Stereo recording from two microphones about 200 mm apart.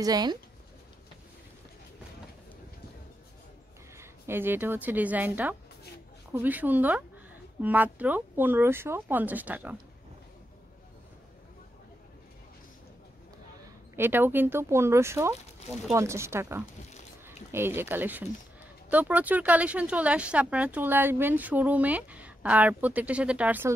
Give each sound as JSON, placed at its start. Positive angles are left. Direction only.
{"t": 0.0, "sound": "speech", "side_deg": -20}
{"t": 3.9, "sound": "a woman's voice", "side_deg": -10}
{"t": 13.9, "sound": "speech", "side_deg": -10}